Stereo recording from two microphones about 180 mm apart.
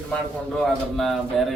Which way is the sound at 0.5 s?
Centre (ahead or behind).